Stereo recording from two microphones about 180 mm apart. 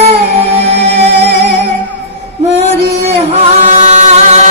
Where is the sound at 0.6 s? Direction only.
35° right (ahead or behind).